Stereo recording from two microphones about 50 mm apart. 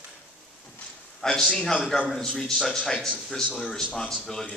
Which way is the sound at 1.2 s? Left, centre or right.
Centre.